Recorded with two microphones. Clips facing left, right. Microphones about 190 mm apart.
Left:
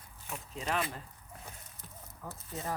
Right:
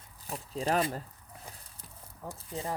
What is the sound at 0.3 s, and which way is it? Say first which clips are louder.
Speech: right 6 dB; 35° right (ahead or behind).